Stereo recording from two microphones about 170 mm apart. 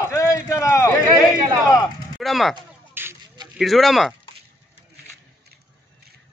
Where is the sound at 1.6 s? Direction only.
20° left (ahead or behind).